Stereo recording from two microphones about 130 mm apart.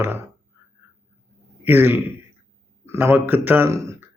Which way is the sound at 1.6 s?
15° right (ahead or behind).